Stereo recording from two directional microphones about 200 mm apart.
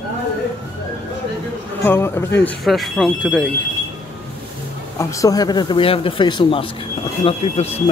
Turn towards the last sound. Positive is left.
turn(degrees=30)  # may be behind; listen again after turning